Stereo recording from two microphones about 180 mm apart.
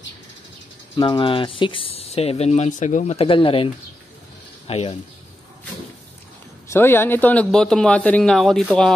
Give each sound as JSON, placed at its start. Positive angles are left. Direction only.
{"t": 0.9, "sound": "speech", "side_deg": 25}
{"t": 6.7, "sound": "speech", "side_deg": 10}